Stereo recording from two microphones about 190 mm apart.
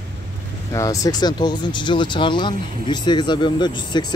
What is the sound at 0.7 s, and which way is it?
Speech, 20° left (ahead or behind).